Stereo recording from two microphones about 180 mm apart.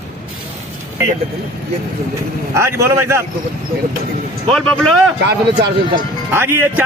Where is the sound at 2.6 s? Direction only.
15° right (ahead or behind).